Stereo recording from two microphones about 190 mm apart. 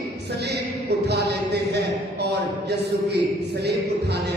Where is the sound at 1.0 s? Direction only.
60° right (ahead or behind).